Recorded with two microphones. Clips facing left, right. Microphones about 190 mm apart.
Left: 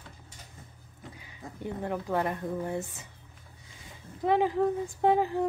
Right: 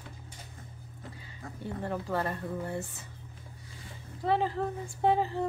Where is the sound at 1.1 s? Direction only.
15° left (ahead or behind).